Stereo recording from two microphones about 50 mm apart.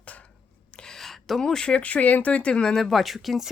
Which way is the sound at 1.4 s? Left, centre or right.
Centre.